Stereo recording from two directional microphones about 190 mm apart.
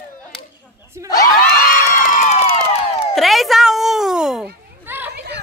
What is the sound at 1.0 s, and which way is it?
Crowd, 20° left (ahead or behind).